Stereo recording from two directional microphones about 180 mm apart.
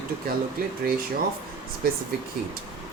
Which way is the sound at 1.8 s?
55° right (ahead or behind).